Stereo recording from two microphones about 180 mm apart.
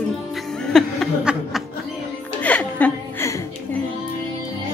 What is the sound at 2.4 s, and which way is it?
Chuckle, 5° left (ahead or behind).